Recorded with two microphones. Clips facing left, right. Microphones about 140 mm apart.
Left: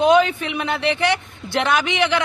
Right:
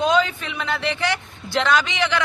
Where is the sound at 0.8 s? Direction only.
60° left (ahead or behind).